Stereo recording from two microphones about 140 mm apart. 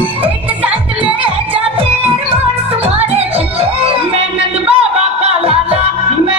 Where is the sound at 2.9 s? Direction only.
45° right (ahead or behind).